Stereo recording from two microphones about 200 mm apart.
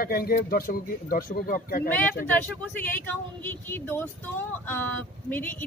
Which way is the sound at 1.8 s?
10° left (ahead or behind).